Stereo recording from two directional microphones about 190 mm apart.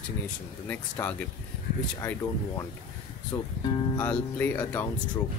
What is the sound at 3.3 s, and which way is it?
Speech, 15° left (ahead or behind).